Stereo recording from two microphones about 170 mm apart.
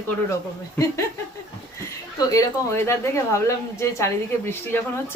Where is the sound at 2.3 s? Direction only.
15° left (ahead or behind).